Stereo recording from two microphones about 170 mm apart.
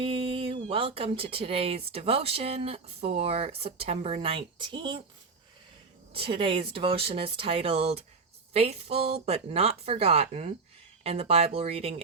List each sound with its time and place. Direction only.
0.0 s speech: 30° right (ahead or behind)
6.1 s speech: 30° right (ahead or behind)